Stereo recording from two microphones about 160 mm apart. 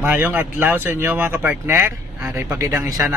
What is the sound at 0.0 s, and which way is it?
A man's voice, 10° right (ahead or behind).